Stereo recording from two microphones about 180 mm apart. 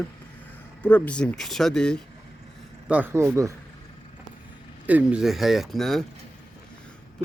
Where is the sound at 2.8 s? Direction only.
10° right (ahead or behind).